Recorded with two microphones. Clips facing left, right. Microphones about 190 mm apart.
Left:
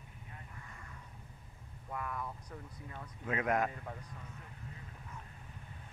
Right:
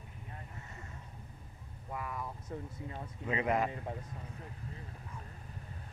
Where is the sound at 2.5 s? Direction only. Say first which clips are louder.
Right 6 dB; 30° right (ahead or behind).